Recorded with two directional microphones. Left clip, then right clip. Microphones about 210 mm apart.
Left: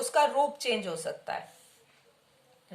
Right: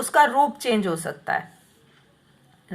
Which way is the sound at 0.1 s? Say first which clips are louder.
Right 8 dB; 15° right (ahead or behind).